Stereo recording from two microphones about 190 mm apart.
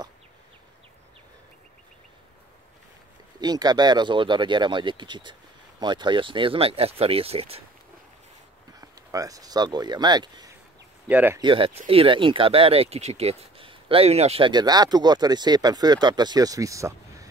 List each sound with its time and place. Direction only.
3.3 s speech: 20° right (ahead or behind)
8.8 s speech: 20° right (ahead or behind)
11.1 s speech: 10° right (ahead or behind)
11.4 s speech: 25° right (ahead or behind)